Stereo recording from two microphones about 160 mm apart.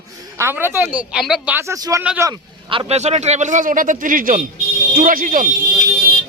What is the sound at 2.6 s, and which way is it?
A man's voice, 35° right (ahead or behind).